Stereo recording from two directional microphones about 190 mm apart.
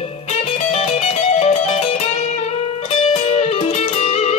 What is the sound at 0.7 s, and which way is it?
Music, 35° left (ahead or behind).